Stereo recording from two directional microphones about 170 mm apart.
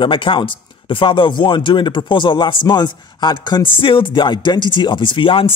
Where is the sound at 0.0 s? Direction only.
30° left (ahead or behind).